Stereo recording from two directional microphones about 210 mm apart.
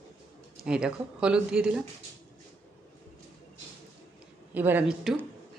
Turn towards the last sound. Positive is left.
turn(degrees=-5)  # may be behind; listen again after turning